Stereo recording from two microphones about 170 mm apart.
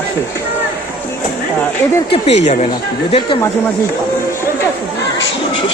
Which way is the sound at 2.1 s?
40° left (ahead or behind).